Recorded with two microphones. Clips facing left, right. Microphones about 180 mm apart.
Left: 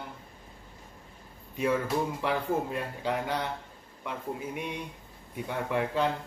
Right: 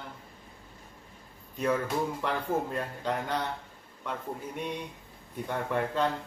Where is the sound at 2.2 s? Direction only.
10° left (ahead or behind).